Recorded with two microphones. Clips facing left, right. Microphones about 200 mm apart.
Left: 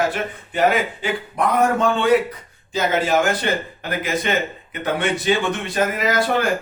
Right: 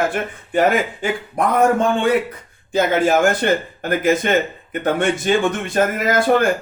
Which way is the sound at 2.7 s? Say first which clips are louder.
Right 3 dB; 50° right (ahead or behind).